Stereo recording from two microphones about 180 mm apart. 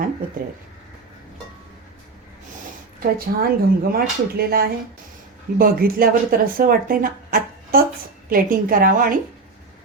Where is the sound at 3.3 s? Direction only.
60° right (ahead or behind).